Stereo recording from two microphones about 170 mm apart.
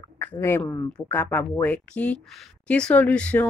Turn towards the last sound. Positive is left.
turn(degrees=5)  # may be behind; listen again after turning